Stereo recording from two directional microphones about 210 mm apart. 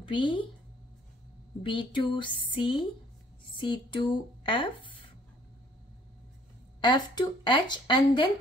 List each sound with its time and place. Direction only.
0.0 s a woman's voice: 25° left (ahead or behind)
1.6 s speech: 25° left (ahead or behind)
6.8 s speech: 20° left (ahead or behind)